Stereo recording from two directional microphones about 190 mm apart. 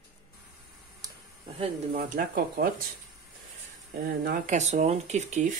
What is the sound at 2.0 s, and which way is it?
Speech, 50° right (ahead or behind).